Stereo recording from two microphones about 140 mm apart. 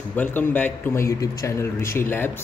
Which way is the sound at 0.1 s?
15° left (ahead or behind).